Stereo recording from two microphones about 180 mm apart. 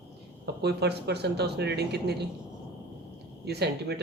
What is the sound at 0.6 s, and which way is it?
Speech, 65° right (ahead or behind).